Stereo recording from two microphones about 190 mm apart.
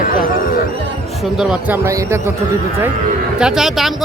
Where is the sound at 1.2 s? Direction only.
Centre (ahead or behind).